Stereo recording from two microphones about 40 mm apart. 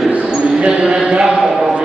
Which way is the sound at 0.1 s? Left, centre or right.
Right.